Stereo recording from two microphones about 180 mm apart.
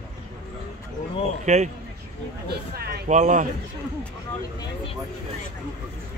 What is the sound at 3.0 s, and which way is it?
Speech, 40° right (ahead or behind).